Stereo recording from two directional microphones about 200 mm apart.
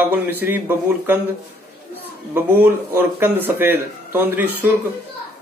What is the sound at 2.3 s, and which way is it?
A man's voice, 10° right (ahead or behind).